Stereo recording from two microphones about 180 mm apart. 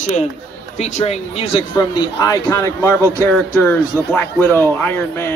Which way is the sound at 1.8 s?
20° left (ahead or behind).